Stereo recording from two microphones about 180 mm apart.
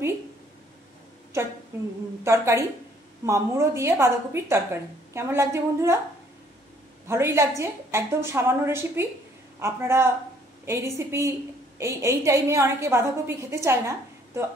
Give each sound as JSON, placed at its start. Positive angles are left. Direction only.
{"t": 1.3, "sound": "a woman's voice", "side_deg": -15}
{"t": 7.1, "sound": "a woman's voice", "side_deg": -15}